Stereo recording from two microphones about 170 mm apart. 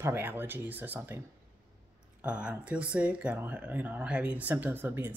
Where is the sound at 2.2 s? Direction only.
5° right (ahead or behind).